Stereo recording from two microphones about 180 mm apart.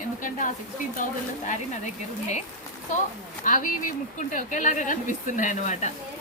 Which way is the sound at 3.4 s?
50° left (ahead or behind).